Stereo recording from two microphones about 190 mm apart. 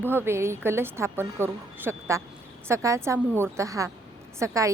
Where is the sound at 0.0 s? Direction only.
10° right (ahead or behind).